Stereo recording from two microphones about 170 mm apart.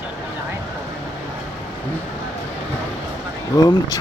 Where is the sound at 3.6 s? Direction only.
20° left (ahead or behind).